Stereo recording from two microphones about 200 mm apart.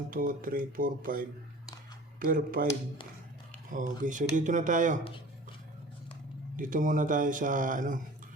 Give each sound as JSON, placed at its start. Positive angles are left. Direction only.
{"t": 0.1, "sound": "speech", "side_deg": -45}
{"t": 3.7, "sound": "speech", "side_deg": -40}
{"t": 6.6, "sound": "speech", "side_deg": -40}